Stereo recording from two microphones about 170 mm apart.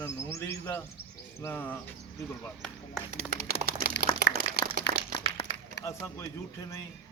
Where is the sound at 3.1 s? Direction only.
60° right (ahead or behind).